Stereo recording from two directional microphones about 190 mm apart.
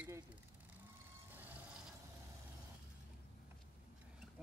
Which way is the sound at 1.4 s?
10° right (ahead or behind).